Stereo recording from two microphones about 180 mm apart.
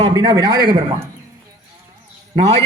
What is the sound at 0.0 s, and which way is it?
Speech, 25° right (ahead or behind).